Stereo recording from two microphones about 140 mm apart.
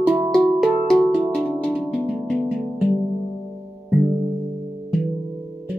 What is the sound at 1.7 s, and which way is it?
Music, 5° left (ahead or behind).